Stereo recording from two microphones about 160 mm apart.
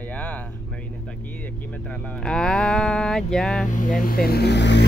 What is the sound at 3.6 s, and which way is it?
Speech, 55° left (ahead or behind).